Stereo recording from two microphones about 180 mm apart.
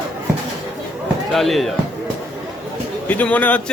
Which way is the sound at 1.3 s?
Centre (ahead or behind).